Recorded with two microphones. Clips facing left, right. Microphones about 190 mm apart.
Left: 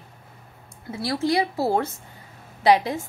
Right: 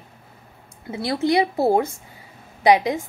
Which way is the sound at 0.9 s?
20° right (ahead or behind).